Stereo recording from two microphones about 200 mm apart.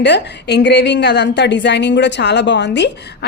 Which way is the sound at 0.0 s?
60° left (ahead or behind).